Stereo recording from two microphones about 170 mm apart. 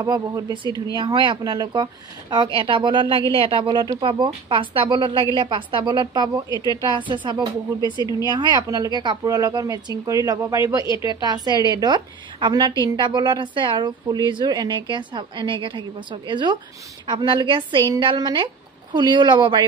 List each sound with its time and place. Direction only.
0.0 s speech: 20° right (ahead or behind)
0.7 s a woman's voice: 20° left (ahead or behind)
0.9 s speech: 30° right (ahead or behind)
6.5 s a woman's voice: 25° left (ahead or behind)
7.0 s speech: 25° right (ahead or behind)
8.0 s a woman's voice: 25° left (ahead or behind)
8.3 s speech: 25° right (ahead or behind)